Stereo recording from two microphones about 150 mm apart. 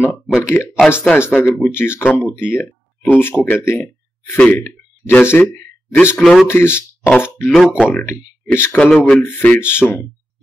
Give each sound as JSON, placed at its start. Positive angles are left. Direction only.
{"t": 0.1, "sound": "speech", "side_deg": 10}
{"t": 5.9, "sound": "a man's voice", "side_deg": 0}
{"t": 6.5, "sound": "speech", "side_deg": 15}
{"t": 7.5, "sound": "a man's voice", "side_deg": -5}
{"t": 7.8, "sound": "speech", "side_deg": 10}